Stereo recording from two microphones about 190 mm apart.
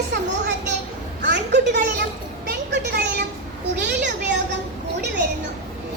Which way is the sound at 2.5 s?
65° right (ahead or behind).